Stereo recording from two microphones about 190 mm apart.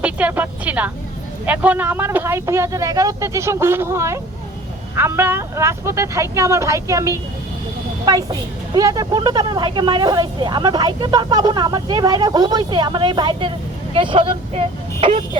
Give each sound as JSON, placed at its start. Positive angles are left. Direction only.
{"t": 0.0, "sound": "a woman's voice", "side_deg": -5}